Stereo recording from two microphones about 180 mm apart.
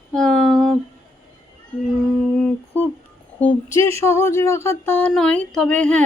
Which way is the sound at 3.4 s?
10° left (ahead or behind).